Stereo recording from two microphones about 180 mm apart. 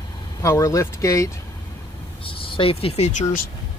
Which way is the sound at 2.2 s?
30° left (ahead or behind).